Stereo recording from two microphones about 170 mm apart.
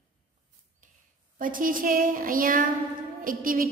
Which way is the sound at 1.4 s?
55° right (ahead or behind).